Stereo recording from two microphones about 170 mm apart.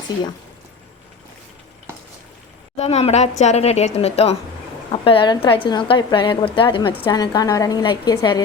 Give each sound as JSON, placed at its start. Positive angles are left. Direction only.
{"t": 2.7, "sound": "a woman's voice", "side_deg": 40}